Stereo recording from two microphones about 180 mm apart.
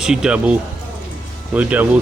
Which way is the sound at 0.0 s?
5° right (ahead or behind).